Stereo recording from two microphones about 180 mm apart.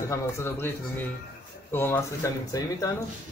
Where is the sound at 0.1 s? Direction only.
15° left (ahead or behind).